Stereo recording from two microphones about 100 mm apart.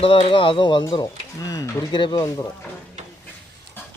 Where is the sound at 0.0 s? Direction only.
65° left (ahead or behind); by 1.7 s 35° left (ahead or behind).